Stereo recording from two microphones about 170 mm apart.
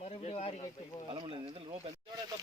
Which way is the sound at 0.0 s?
35° left (ahead or behind).